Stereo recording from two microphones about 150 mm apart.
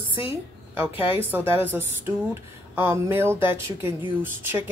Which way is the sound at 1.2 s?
15° right (ahead or behind).